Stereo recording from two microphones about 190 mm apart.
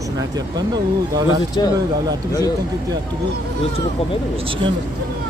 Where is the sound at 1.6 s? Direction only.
20° left (ahead or behind).